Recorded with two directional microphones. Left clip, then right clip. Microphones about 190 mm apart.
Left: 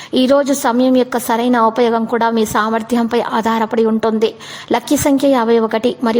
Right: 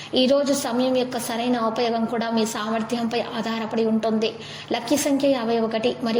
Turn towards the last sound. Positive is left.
turn(degrees=40)  # may be behind; listen again after turning